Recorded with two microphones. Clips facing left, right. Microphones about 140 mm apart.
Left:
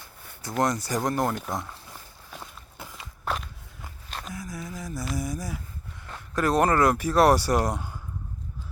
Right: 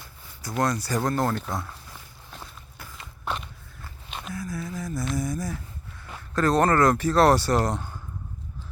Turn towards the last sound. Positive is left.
turn(degrees=10)  # may be behind; listen again after turning